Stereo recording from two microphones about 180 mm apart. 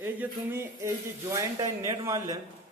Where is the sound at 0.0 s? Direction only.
15° right (ahead or behind).